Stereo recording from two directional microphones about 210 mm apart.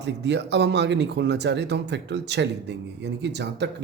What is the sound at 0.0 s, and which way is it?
Speech, 55° right (ahead or behind).